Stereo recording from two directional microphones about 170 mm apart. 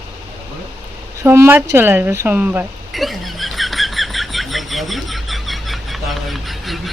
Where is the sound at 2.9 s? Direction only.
Centre (ahead or behind).